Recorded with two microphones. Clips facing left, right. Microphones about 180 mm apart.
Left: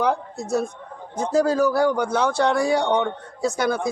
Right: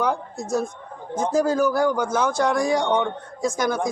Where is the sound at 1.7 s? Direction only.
30° left (ahead or behind).